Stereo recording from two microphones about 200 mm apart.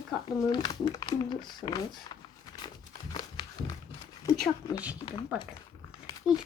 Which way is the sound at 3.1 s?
20° left (ahead or behind).